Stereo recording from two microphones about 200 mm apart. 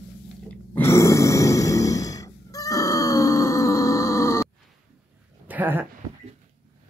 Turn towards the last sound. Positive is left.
turn(degrees=-10)  # may be behind; listen again after turning